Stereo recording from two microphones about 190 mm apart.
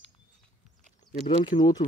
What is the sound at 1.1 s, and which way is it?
Speech, 45° left (ahead or behind).